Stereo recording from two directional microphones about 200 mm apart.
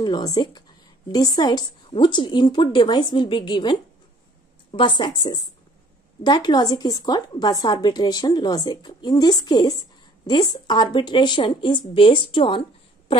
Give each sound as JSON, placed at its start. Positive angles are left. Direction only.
{"t": 0.0, "sound": "a woman's voice", "side_deg": 20}
{"t": 4.7, "sound": "a woman's voice", "side_deg": 25}